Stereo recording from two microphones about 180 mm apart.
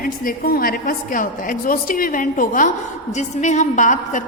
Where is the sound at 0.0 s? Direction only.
50° left (ahead or behind).